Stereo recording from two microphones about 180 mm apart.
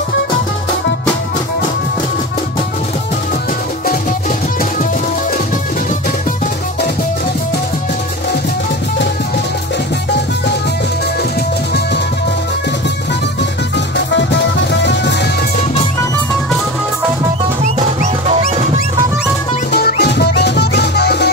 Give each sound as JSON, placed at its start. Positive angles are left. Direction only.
{"t": 13.9, "sound": "music", "side_deg": 75}
{"t": 19.7, "sound": "music", "side_deg": 65}